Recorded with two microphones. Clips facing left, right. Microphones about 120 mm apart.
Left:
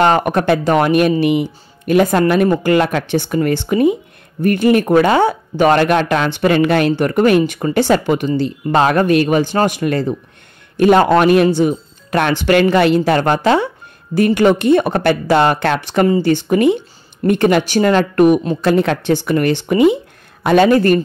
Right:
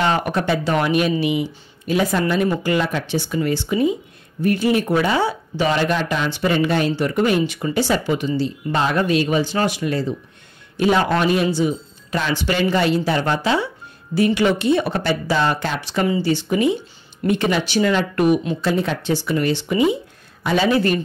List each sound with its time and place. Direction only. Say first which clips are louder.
0.0 s speech: left 6 dB; 50° left (ahead or behind)
18.6 s speech: left 6 dB; 60° left (ahead or behind)